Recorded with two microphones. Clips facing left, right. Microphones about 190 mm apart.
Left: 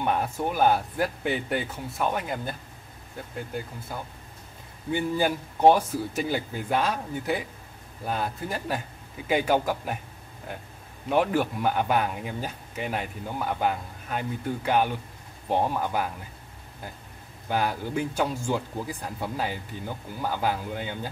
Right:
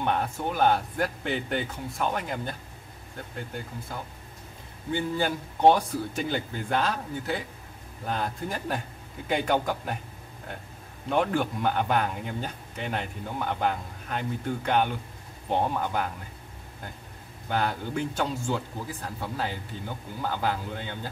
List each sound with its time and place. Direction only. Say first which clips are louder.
0.0 s speech: left 1 dB; 10° left (ahead or behind)
4.9 s speech: left 2 dB; 10° left (ahead or behind)
11.1 s speech: left 2 dB; 5° left (ahead or behind)
17.5 s speech: left 1 dB; 10° left (ahead or behind)